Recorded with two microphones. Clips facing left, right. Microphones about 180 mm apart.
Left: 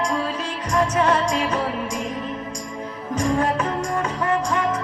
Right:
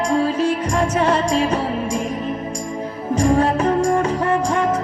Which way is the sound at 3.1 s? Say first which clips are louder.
Right 5 dB; 30° right (ahead or behind).